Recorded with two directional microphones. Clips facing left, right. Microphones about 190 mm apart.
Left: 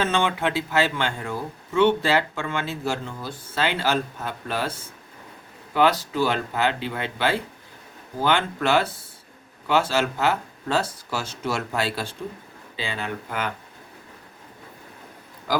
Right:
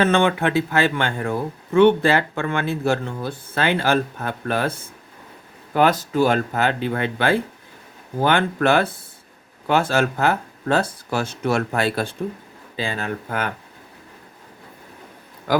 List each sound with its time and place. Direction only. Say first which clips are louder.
0.0 s speech: right 5 dB; 55° right (ahead or behind)